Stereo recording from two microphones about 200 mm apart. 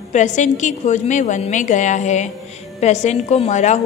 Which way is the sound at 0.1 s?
35° left (ahead or behind).